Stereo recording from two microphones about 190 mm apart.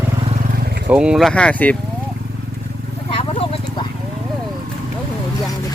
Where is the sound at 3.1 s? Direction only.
30° left (ahead or behind).